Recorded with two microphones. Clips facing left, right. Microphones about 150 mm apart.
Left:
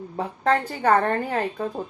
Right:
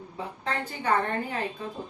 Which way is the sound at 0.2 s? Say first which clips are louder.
Left 10 dB; 55° left (ahead or behind).